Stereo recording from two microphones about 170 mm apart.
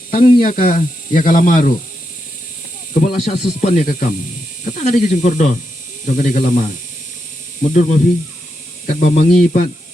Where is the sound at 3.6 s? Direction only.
45° left (ahead or behind).